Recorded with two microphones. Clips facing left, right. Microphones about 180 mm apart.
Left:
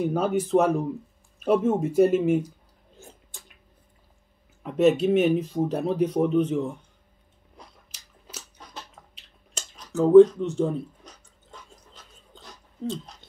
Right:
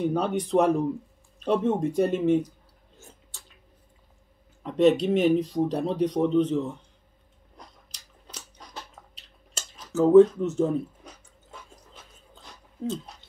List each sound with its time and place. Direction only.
0.0 s speech: 5° left (ahead or behind)
3.0 s chewing: 15° left (ahead or behind)
4.6 s speech: 5° left (ahead or behind)
7.5 s dog: 5° left (ahead or behind)
9.5 s a sound: 5° right (ahead or behind)
12.8 s speech: 5° right (ahead or behind)